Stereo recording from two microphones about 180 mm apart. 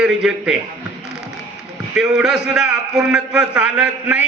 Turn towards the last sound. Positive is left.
turn(degrees=-5)  # may be behind; listen again after turning